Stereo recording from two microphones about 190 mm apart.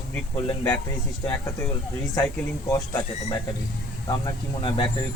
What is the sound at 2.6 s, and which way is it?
Speech, 15° left (ahead or behind).